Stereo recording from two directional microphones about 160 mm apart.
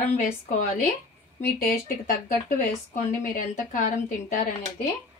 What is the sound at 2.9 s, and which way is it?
A woman's voice, 55° left (ahead or behind).